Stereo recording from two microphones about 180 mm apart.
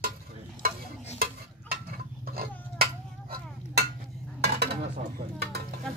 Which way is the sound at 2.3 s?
55° right (ahead or behind).